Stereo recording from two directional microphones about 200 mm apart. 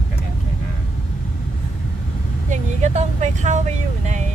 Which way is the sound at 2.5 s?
35° right (ahead or behind).